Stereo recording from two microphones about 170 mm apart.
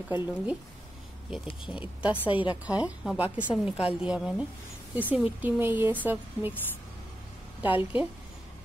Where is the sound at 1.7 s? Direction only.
5° right (ahead or behind).